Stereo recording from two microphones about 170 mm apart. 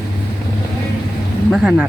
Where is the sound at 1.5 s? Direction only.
5° right (ahead or behind).